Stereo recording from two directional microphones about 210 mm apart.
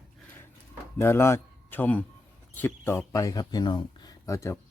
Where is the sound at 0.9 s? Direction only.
10° left (ahead or behind).